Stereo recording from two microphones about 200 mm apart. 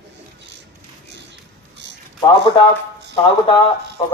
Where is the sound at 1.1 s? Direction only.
60° right (ahead or behind).